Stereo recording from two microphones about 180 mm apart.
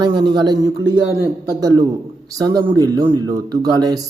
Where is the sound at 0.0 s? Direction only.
25° right (ahead or behind).